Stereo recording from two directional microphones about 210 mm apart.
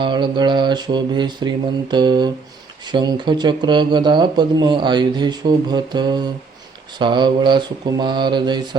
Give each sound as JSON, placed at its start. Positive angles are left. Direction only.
{"t": 0.0, "sound": "speech", "side_deg": -20}